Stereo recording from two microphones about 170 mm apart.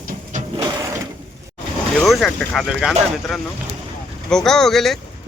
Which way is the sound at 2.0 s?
Centre (ahead or behind).